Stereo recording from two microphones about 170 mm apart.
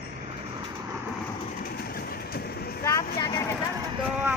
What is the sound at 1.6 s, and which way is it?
Vehicle, 60° left (ahead or behind).